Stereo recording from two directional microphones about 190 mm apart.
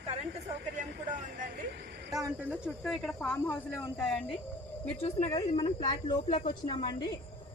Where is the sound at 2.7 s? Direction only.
Centre (ahead or behind).